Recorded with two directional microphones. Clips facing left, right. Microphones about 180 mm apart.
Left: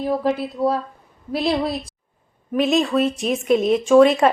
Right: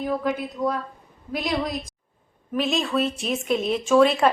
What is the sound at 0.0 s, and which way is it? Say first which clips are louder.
Speech: left 4 dB; 30° left (ahead or behind).